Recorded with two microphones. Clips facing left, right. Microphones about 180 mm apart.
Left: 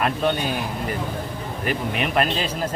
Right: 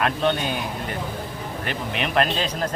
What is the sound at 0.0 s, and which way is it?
Speech, 5° left (ahead or behind).